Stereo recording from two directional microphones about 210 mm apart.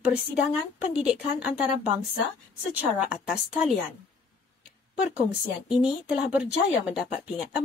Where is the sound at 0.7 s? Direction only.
5° right (ahead or behind).